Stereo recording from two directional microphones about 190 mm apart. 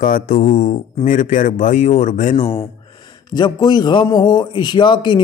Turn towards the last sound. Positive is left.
turn(degrees=25)  # may be behind; listen again after turning